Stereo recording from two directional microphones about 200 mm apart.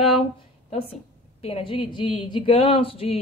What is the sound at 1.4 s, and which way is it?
A woman's voice, 25° left (ahead or behind).